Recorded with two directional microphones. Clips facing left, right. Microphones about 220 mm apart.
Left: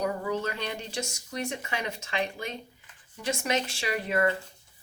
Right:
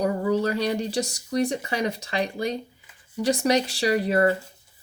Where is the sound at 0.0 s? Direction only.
35° right (ahead or behind).